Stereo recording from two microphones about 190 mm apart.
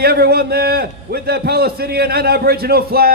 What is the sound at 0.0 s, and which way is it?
A man's voice, 55° right (ahead or behind).